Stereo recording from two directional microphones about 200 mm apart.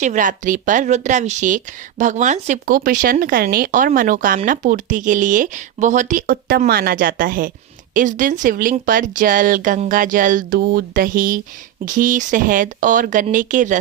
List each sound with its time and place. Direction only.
0.0 s speech: 40° right (ahead or behind)